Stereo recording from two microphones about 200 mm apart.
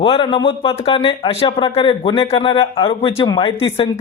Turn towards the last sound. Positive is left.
turn(degrees=30)  # may be behind; listen again after turning